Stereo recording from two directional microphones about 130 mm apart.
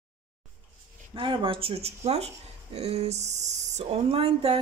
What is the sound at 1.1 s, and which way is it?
Speech, 40° right (ahead or behind).